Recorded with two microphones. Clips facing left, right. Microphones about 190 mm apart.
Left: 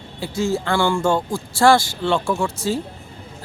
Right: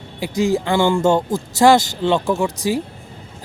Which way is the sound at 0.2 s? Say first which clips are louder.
Right 4 dB; 15° right (ahead or behind).